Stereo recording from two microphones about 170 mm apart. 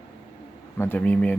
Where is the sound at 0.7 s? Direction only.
10° left (ahead or behind).